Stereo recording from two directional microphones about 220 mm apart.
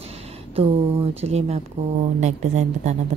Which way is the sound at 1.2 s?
30° right (ahead or behind).